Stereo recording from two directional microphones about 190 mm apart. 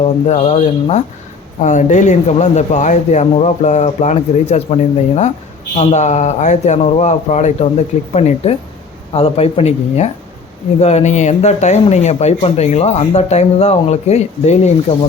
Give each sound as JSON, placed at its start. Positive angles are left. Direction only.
{"t": 0.0, "sound": "speech", "side_deg": 35}